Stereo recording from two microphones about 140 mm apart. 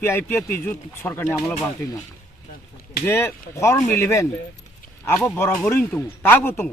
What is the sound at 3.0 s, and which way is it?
A man's voice, 15° left (ahead or behind).